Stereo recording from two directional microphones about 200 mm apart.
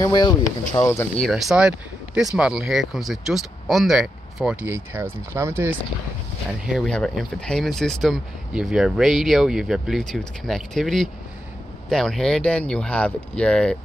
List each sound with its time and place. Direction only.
0.0 s speech: 20° left (ahead or behind)
1.2 s speech: centre (ahead or behind)
6.6 s speech: centre (ahead or behind)